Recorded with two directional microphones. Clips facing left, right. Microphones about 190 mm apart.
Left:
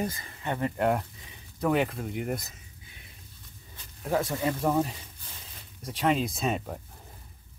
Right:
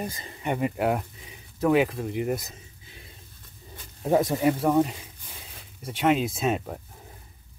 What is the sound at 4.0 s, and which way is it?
Speech, 20° right (ahead or behind).